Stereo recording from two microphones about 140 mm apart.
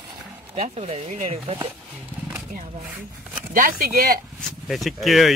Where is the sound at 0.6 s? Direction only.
45° right (ahead or behind).